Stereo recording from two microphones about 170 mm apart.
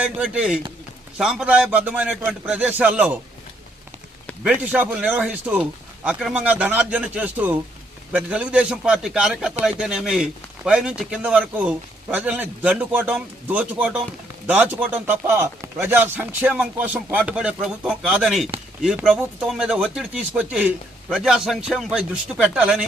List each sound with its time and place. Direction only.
0.0 s a man's voice: 5° right (ahead or behind)
4.4 s a man's voice: 5° right (ahead or behind)